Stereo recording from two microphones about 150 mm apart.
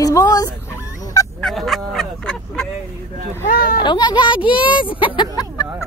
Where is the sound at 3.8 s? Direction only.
30° left (ahead or behind).